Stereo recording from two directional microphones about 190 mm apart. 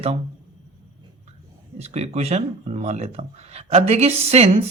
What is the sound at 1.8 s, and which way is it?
Speech, 35° right (ahead or behind).